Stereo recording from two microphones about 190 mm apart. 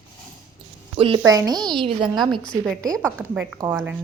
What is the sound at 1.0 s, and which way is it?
A woman's voice, 20° right (ahead or behind).